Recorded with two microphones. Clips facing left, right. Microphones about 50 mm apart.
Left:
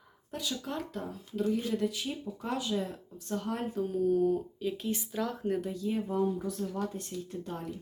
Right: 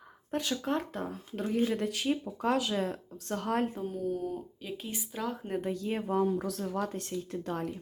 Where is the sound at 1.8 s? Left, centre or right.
Right.